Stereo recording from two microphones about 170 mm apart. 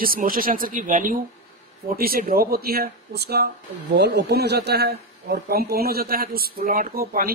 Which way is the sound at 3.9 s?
80° right.